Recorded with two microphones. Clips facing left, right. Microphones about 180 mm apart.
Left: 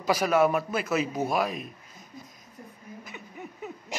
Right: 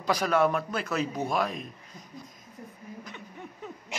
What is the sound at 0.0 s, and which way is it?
A man's voice, 5° left (ahead or behind).